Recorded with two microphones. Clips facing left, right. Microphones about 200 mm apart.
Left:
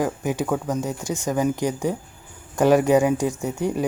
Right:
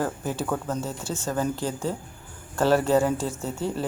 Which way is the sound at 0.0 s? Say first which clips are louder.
Left 4 dB; 15° left (ahead or behind).